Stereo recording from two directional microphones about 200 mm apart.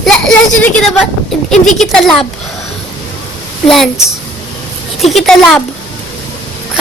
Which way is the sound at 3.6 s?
Centre (ahead or behind).